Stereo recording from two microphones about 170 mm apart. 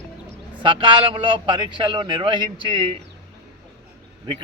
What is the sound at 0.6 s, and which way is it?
A man's voice, 30° right (ahead or behind).